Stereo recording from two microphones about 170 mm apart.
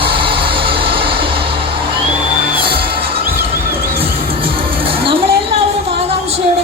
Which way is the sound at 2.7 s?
30° right (ahead or behind).